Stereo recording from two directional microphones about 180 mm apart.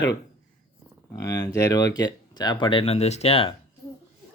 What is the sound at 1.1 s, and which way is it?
Speech, 20° left (ahead or behind).